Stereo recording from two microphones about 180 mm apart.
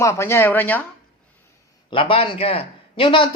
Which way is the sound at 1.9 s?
30° left (ahead or behind).